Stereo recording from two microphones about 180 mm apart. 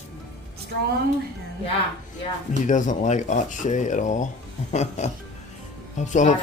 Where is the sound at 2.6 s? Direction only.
45° left (ahead or behind).